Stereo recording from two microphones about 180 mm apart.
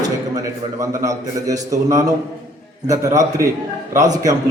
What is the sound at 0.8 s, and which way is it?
A man's voice, 20° right (ahead or behind).